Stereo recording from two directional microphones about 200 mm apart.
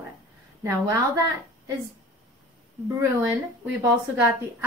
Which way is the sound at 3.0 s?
10° right (ahead or behind).